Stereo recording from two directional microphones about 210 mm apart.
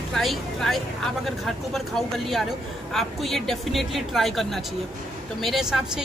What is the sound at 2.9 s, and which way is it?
Speech, centre (ahead or behind).